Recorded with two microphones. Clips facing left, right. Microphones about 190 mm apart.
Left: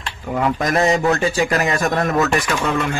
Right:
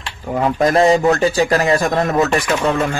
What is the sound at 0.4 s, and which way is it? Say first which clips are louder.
A man's voice: right 4 dB; 30° right (ahead or behind).